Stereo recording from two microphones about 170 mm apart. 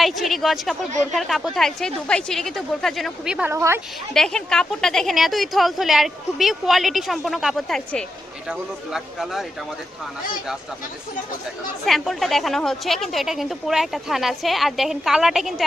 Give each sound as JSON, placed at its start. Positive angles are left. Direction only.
{"t": 0.0, "sound": "a woman's voice", "side_deg": 0}
{"t": 3.5, "sound": "a woman's voice", "side_deg": -15}
{"t": 4.1, "sound": "a woman's voice", "side_deg": 5}
{"t": 11.9, "sound": "a woman's voice", "side_deg": 0}